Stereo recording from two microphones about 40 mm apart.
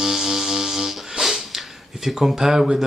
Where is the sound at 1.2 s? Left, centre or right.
Centre.